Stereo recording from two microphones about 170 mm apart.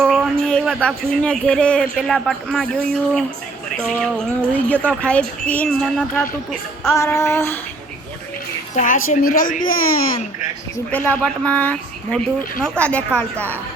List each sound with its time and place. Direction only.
0.0 s a sound: 5° left (ahead or behind)
3.8 s speech: 5° left (ahead or behind)
6.9 s speech: 15° left (ahead or behind)
8.7 s a woman's voice: 50° left (ahead or behind)
10.9 s speech: 10° left (ahead or behind)